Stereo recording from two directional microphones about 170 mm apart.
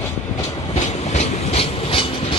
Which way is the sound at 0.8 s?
40° left (ahead or behind).